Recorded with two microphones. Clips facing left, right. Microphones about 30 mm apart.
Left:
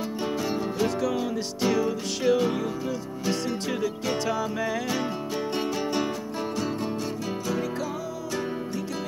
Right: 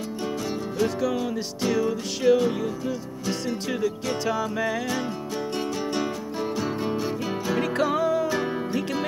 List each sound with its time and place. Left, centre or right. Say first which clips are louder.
0.7 s music: right 3 dB; centre
7.8 s music: right 10 dB; right